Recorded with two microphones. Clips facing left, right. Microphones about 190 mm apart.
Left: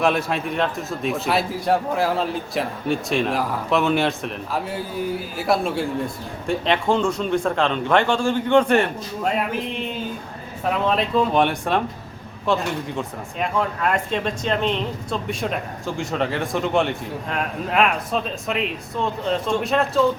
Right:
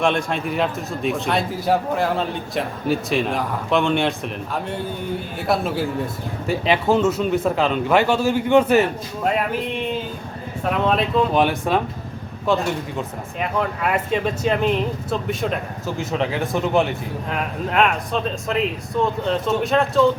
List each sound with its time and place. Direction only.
0.0 s a man's voice: 5° left (ahead or behind)
10.8 s a man's voice: centre (ahead or behind)